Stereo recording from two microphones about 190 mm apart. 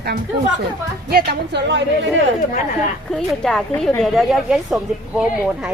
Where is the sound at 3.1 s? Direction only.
5° left (ahead or behind).